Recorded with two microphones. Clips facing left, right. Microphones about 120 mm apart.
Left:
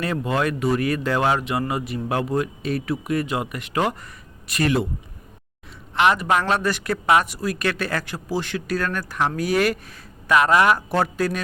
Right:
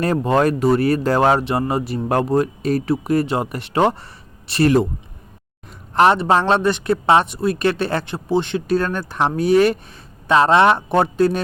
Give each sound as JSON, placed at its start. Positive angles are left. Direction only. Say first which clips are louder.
{"t": 0.0, "sound": "speech", "louder": "right 6 dB", "side_deg": -40}
{"t": 5.9, "sound": "speech", "louder": "right 5 dB", "side_deg": -35}